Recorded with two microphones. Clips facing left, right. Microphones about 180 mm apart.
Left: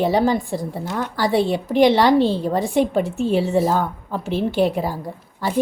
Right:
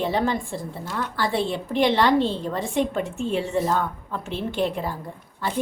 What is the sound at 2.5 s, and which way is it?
A woman's voice, 35° left (ahead or behind).